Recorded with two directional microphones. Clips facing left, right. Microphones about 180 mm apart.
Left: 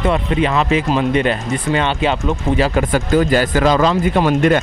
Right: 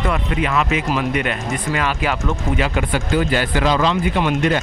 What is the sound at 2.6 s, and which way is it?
Speech, 40° left (ahead or behind).